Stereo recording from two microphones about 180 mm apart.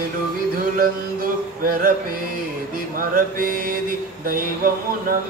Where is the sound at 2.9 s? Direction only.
50° right (ahead or behind).